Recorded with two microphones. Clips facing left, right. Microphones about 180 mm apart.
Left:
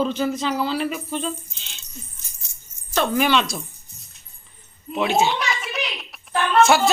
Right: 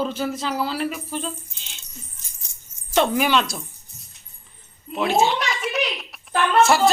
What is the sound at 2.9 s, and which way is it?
Speech, 20° right (ahead or behind).